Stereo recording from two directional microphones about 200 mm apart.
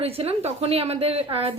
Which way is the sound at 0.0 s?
30° right (ahead or behind).